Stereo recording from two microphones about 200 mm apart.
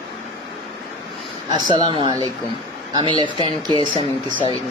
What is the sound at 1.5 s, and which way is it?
Speech, 20° right (ahead or behind).